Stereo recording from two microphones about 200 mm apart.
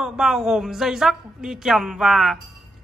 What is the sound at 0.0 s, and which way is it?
A woman's voice, centre (ahead or behind).